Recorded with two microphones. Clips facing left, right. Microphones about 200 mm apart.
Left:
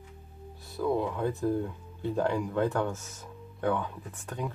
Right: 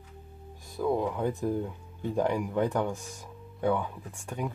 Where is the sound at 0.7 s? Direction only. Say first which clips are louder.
Right 1 dB; 15° right (ahead or behind).